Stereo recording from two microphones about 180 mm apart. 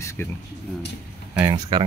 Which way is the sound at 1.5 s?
25° right (ahead or behind).